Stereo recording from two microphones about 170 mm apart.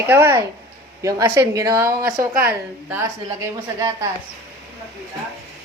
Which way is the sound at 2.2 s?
60° right (ahead or behind).